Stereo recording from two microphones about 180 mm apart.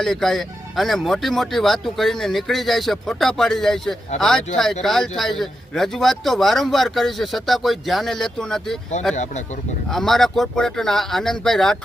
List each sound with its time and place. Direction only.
0.0 s a man's voice: centre (ahead or behind)
9.1 s speech: 40° left (ahead or behind)
9.9 s a man's voice: centre (ahead or behind)